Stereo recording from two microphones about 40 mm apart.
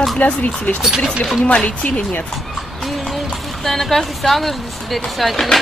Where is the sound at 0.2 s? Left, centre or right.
Left.